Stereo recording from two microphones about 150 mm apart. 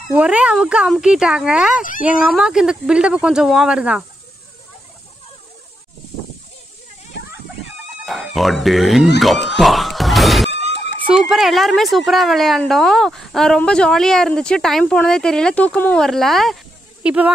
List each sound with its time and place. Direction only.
0.1 s speech: 10° right (ahead or behind)
1.8 s speech: 65° left (ahead or behind)
2.0 s a woman's voice: 5° right (ahead or behind)
8.0 s a sound: centre (ahead or behind)
8.4 s a woman's voice: centre (ahead or behind)
17.0 s speech: 10° right (ahead or behind)